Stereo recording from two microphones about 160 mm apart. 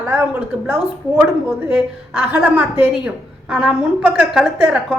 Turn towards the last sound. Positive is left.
turn(degrees=-5)  # may be behind; listen again after turning